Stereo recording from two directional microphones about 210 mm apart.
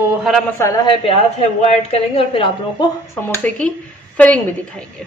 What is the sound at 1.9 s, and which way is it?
Speech, 25° left (ahead or behind).